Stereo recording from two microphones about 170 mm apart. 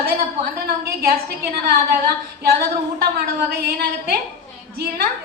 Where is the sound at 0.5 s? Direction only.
65° right (ahead or behind).